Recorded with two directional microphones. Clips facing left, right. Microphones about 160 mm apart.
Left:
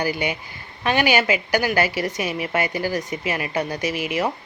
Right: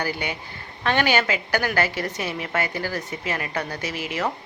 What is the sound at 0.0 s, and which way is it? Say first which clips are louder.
A woman's voice: left 4 dB; 15° left (ahead or behind).